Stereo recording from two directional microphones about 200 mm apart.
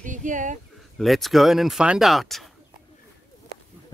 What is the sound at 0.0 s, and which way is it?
Speech, 40° right (ahead or behind).